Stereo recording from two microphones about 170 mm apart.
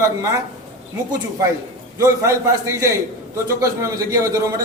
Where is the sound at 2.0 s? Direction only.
20° right (ahead or behind).